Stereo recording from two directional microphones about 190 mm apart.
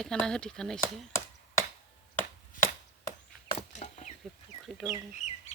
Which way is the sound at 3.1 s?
30° left (ahead or behind).